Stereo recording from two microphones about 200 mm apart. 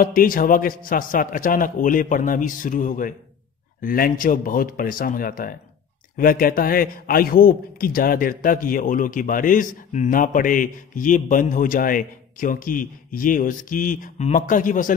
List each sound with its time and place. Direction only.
0.0 s a man's voice: 45° left (ahead or behind)